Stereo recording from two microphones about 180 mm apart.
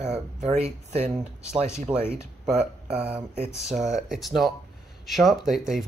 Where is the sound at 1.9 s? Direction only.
25° right (ahead or behind).